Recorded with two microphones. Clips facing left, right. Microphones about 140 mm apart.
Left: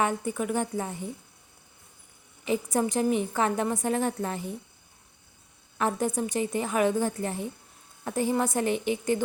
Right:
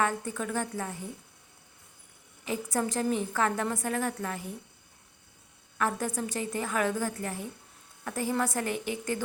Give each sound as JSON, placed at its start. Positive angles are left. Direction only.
{"t": 0.0, "sound": "a woman's voice", "side_deg": 15}
{"t": 2.4, "sound": "a woman's voice", "side_deg": 20}
{"t": 5.7, "sound": "a woman's voice", "side_deg": 20}